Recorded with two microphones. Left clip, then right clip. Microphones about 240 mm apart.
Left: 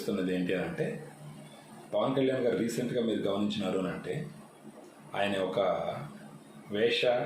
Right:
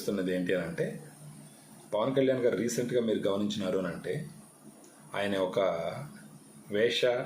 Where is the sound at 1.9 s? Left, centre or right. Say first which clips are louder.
Right 1 dB; centre.